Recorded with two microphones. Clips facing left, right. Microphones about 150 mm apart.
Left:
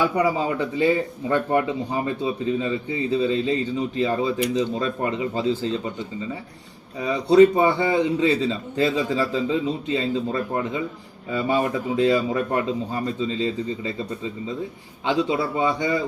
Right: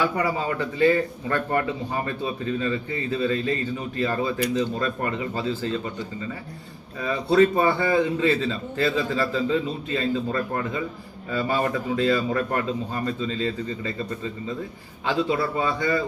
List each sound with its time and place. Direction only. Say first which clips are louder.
0.0 s speech: left 3 dB; 15° left (ahead or behind)
7.0 s speech: left 4 dB; 15° left (ahead or behind)
15.0 s speech: left 1 dB; 15° left (ahead or behind)